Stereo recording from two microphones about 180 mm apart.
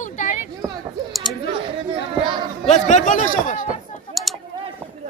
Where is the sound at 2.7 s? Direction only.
40° left (ahead or behind).